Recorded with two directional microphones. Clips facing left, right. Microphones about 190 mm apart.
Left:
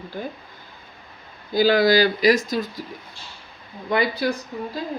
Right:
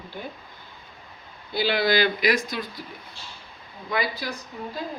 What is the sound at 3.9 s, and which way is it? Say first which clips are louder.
Speech: left 6 dB; 55° left (ahead or behind).